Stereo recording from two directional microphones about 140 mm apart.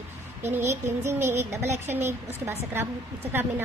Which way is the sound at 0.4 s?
15° right (ahead or behind).